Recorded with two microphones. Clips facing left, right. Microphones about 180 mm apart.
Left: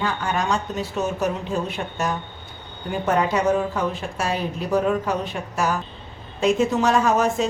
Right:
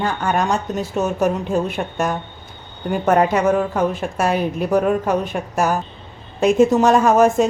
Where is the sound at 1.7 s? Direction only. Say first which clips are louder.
Right 4 dB; 50° right (ahead or behind).